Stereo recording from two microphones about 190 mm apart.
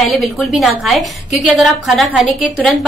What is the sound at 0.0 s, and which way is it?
A woman's voice, centre (ahead or behind).